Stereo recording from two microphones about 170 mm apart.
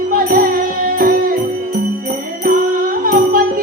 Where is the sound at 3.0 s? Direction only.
60° right (ahead or behind).